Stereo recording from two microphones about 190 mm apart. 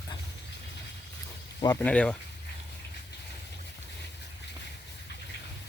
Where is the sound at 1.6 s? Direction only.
15° left (ahead or behind).